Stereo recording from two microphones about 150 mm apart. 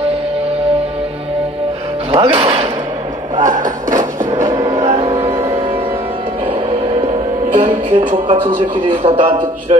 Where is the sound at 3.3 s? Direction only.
60° right (ahead or behind).